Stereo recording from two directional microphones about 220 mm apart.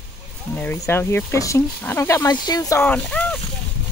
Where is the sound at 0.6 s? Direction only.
10° left (ahead or behind).